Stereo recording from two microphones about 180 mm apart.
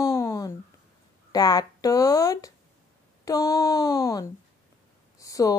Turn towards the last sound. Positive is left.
turn(degrees=20)  # may be behind; listen again after turning